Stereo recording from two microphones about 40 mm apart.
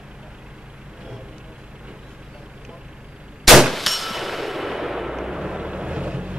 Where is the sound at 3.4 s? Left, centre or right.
Centre.